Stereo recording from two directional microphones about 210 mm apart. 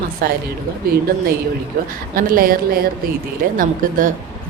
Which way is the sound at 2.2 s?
45° right (ahead or behind).